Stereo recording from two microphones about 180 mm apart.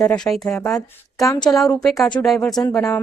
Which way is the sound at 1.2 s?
25° left (ahead or behind).